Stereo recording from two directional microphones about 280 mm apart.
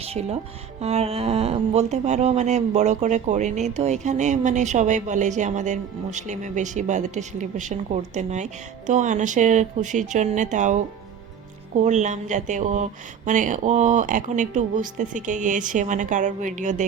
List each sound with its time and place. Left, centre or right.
0.0 s speech: right
11.8 s speech: right